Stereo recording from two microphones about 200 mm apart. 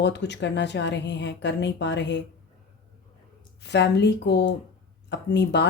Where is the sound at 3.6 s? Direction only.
60° left (ahead or behind).